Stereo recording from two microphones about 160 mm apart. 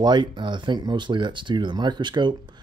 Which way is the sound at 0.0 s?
30° right (ahead or behind).